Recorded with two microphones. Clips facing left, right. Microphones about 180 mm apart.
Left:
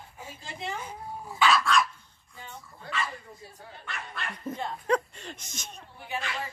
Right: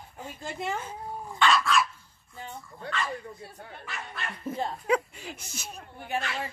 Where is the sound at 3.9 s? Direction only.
5° right (ahead or behind).